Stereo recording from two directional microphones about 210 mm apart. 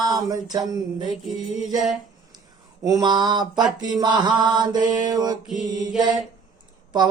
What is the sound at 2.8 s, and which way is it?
Music, 20° right (ahead or behind).